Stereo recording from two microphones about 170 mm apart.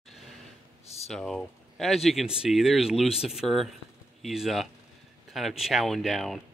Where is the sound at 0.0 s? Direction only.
Centre (ahead or behind).